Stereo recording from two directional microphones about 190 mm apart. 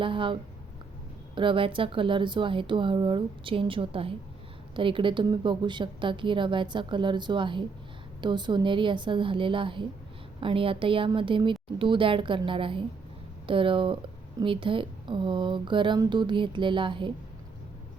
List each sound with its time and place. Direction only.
0.0 s speech: 25° right (ahead or behind)
1.4 s speech: 25° right (ahead or behind)